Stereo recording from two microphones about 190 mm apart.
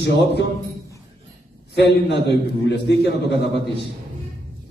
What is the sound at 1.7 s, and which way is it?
Speech, 60° left (ahead or behind).